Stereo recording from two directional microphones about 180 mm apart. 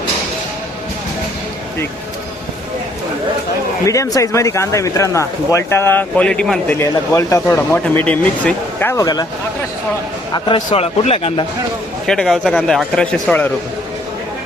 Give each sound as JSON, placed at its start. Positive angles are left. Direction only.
{"t": 3.8, "sound": "speech", "side_deg": 15}
{"t": 6.7, "sound": "speech", "side_deg": 15}
{"t": 10.3, "sound": "speech", "side_deg": 25}
{"t": 12.0, "sound": "a man's voice", "side_deg": 0}